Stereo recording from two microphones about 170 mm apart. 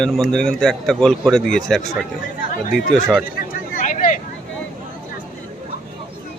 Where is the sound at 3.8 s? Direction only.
50° left (ahead or behind).